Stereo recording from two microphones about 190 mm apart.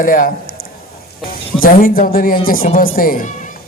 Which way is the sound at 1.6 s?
50° left (ahead or behind).